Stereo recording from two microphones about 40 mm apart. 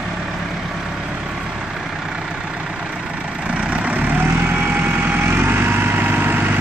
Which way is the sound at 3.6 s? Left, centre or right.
Right.